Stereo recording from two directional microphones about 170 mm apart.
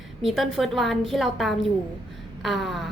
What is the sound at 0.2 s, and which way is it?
A woman's voice, centre (ahead or behind).